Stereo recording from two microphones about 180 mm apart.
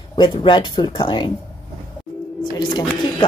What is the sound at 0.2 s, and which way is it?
A woman's voice, 25° left (ahead or behind).